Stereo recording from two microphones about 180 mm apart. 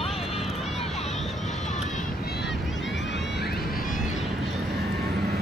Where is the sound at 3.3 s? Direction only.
60° left (ahead or behind).